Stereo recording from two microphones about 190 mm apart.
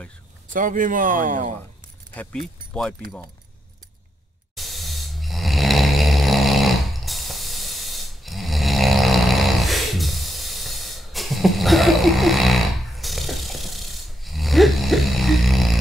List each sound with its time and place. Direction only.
0.5 s speech: 45° right (ahead or behind)
2.1 s speech: 5° left (ahead or behind)
4.6 s snoring: centre (ahead or behind)